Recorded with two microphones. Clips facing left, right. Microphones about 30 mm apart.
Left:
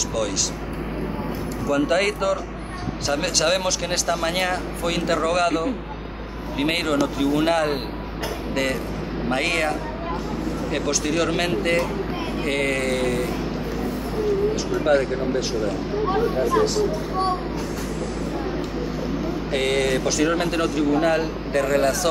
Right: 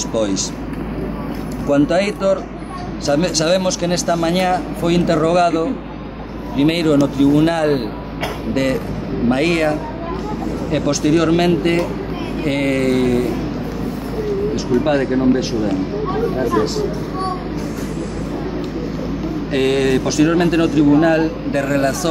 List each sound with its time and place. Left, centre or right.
0.1 s speech: centre
1.7 s speech: centre
9.3 s speech: centre
14.8 s speech: centre
15.1 s speech: right
19.5 s speech: centre